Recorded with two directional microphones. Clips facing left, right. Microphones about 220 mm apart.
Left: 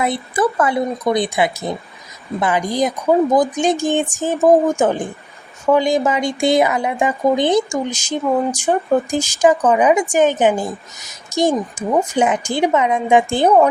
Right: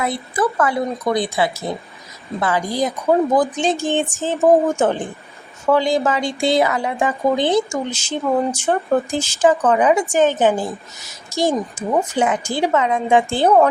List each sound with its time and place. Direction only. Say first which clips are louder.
0.0 s a woman's voice: left 2 dB; 20° left (ahead or behind)